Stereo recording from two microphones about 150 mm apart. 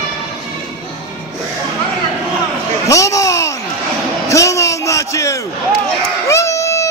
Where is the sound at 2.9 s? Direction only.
20° left (ahead or behind).